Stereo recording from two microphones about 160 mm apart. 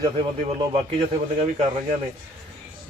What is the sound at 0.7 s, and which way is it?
Speech, 35° right (ahead or behind).